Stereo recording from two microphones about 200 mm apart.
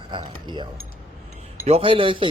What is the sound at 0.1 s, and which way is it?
Speech, 25° right (ahead or behind).